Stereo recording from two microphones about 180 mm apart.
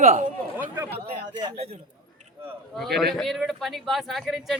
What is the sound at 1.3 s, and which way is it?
Speech, 25° right (ahead or behind).